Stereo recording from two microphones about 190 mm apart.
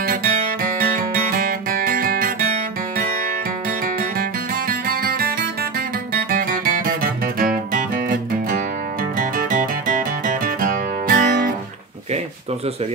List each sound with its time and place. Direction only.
0.0 s guitar: 50° right (ahead or behind)
3.8 s music: 50° right (ahead or behind)
6.3 s music: 45° right (ahead or behind)